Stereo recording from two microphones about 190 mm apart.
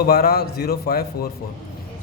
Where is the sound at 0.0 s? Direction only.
55° left (ahead or behind).